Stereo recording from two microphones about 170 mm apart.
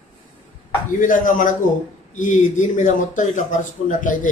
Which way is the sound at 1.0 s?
50° left (ahead or behind).